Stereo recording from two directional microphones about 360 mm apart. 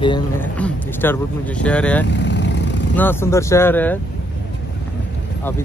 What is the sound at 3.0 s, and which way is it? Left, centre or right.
Speech, centre.